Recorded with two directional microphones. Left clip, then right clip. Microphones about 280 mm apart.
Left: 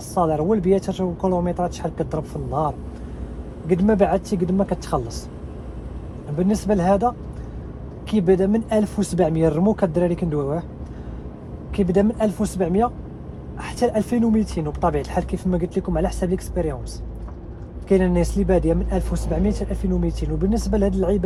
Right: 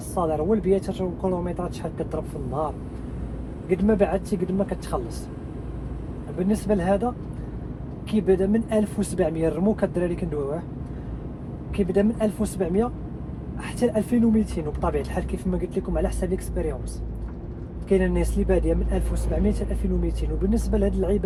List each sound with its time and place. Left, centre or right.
0.1 s speech: left
6.5 s speech: left
8.1 s speech: left
11.8 s speech: left
17.8 s speech: left